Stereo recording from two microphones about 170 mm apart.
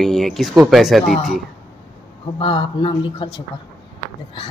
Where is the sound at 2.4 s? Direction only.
30° left (ahead or behind).